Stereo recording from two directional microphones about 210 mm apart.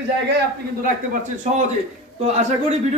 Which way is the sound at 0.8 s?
40° right (ahead or behind).